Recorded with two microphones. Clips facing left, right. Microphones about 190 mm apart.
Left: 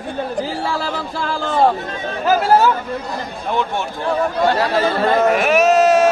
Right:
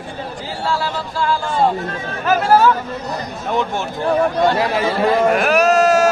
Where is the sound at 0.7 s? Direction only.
60° left (ahead or behind).